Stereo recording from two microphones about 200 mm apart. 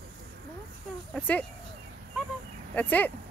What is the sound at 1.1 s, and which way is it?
Speech, 5° left (ahead or behind).